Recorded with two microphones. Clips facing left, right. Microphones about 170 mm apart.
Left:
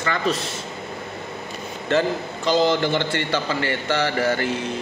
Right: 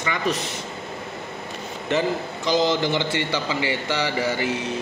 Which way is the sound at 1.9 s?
15° right (ahead or behind).